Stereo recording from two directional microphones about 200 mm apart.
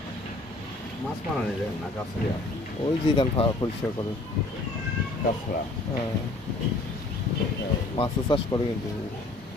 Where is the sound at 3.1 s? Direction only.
25° left (ahead or behind).